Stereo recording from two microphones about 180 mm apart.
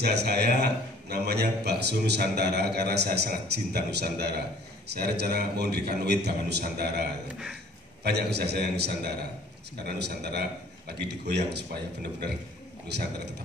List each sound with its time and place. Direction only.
0.0 s a man's voice: 65° right (ahead or behind)